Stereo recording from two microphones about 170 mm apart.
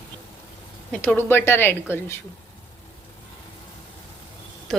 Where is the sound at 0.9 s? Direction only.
10° left (ahead or behind).